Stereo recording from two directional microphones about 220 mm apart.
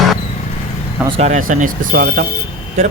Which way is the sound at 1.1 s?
30° right (ahead or behind).